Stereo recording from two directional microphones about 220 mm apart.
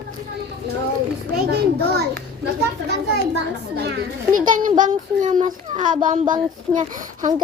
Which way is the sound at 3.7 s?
50° right (ahead or behind).